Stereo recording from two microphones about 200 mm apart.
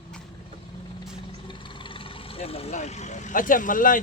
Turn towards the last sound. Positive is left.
turn(degrees=40)  # may be behind; listen again after turning